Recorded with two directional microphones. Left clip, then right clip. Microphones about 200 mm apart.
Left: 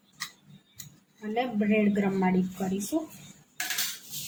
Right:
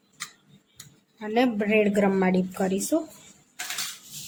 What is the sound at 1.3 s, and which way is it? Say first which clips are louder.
A woman's voice: right 5 dB; 60° right (ahead or behind).